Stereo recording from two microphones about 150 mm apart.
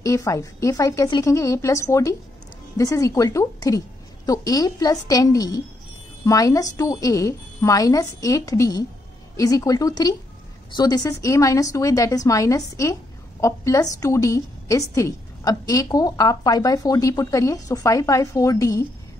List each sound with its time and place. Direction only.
0.0 s a woman's voice: 20° left (ahead or behind)